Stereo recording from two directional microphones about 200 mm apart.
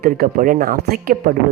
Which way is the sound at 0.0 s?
45° right (ahead or behind).